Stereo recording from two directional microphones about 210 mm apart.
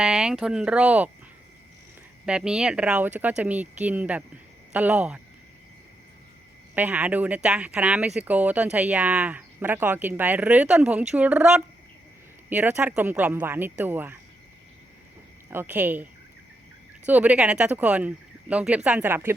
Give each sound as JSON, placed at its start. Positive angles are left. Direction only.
{"t": 0.0, "sound": "speech", "side_deg": -5}
{"t": 2.2, "sound": "speech", "side_deg": -5}
{"t": 6.7, "sound": "speech", "side_deg": -5}
{"t": 15.4, "sound": "speech", "side_deg": -10}
{"t": 17.1, "sound": "speech", "side_deg": -5}